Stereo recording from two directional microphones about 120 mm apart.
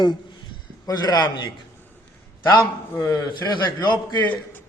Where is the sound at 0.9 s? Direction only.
35° left (ahead or behind).